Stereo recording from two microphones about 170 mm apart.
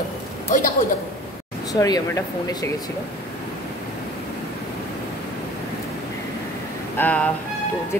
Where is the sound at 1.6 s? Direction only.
20° left (ahead or behind).